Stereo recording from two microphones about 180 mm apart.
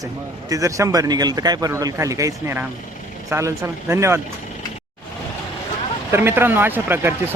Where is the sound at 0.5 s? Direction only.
15° right (ahead or behind).